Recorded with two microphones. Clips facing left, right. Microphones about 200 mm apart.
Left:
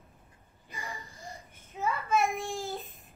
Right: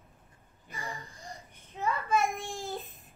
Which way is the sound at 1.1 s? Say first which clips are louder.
Left 1 dB; centre (ahead or behind).